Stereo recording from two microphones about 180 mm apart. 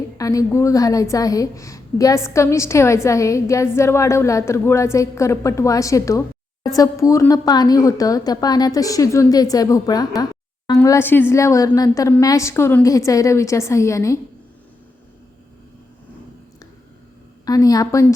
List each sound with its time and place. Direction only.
0.2 s a woman's voice: 20° left (ahead or behind)
17.4 s a woman's voice: 20° left (ahead or behind)